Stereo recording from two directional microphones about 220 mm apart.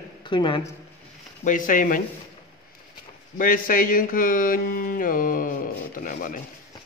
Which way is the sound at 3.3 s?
40° left (ahead or behind).